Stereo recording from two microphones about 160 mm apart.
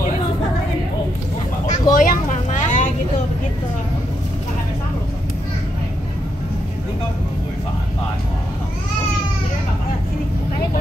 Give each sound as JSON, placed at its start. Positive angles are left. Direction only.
{"t": 1.7, "sound": "vehicle", "side_deg": 60}